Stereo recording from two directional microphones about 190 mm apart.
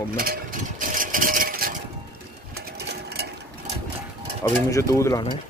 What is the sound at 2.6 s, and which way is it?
Sewing machine, 60° right (ahead or behind).